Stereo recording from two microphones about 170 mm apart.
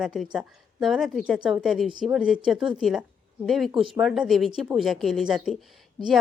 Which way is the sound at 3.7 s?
30° right (ahead or behind).